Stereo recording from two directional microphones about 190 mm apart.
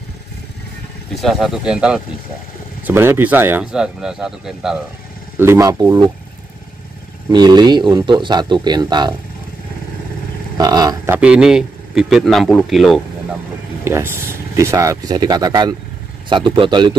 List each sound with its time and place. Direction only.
1.1 s speech: centre (ahead or behind)
5.4 s speech: 15° right (ahead or behind)
7.2 s speech: 20° right (ahead or behind)
10.6 s speech: 20° right (ahead or behind)
11.1 s a man's voice: 5° right (ahead or behind)
13.8 s speech: 15° right (ahead or behind)